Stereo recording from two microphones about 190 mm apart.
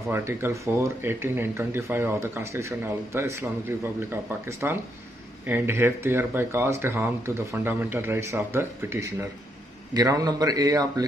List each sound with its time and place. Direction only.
0.1 s a man's voice: 10° right (ahead or behind)